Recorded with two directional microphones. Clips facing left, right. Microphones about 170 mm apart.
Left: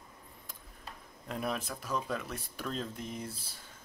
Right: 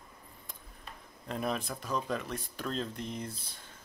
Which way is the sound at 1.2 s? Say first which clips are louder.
Right 2 dB; centre (ahead or behind).